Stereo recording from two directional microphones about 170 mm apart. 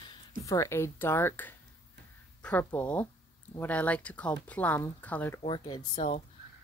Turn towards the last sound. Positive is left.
turn(degrees=25)  # may be behind; listen again after turning